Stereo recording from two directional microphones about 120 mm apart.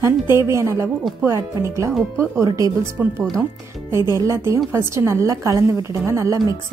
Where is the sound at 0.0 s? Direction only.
20° right (ahead or behind).